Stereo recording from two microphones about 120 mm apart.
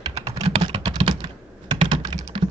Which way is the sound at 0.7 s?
40° right (ahead or behind).